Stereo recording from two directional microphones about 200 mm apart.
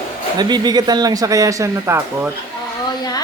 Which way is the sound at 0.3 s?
20° right (ahead or behind).